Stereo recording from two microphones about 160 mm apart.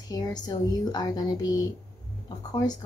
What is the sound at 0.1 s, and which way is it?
Speech, 25° left (ahead or behind).